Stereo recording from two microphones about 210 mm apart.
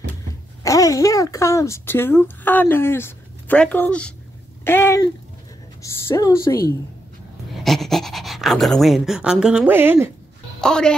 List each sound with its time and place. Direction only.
0.7 s speech: 15° left (ahead or behind)
7.5 s speech: centre (ahead or behind)
10.6 s speech: 5° left (ahead or behind)